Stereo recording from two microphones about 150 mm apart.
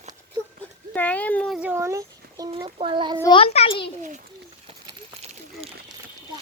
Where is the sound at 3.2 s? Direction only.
40° left (ahead or behind).